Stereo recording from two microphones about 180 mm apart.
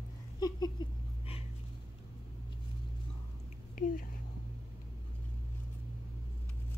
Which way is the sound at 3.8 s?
50° left (ahead or behind).